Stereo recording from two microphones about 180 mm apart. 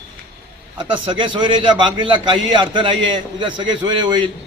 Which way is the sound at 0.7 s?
25° right (ahead or behind).